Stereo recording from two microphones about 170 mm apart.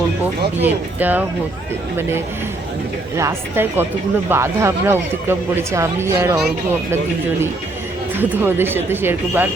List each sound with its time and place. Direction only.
0.6 s speech: 10° right (ahead or behind)
3.2 s speech: 15° right (ahead or behind)
8.2 s speech: 10° right (ahead or behind)